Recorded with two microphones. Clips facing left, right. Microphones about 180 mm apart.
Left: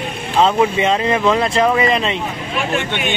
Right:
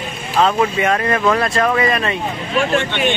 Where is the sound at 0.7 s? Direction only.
20° left (ahead or behind).